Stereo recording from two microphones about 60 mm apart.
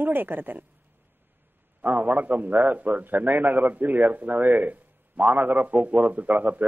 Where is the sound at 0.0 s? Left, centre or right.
Right.